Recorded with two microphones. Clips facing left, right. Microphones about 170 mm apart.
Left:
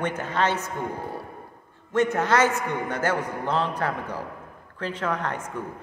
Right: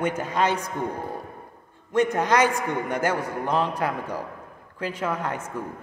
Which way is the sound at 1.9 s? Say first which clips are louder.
Right 1 dB; 15° right (ahead or behind).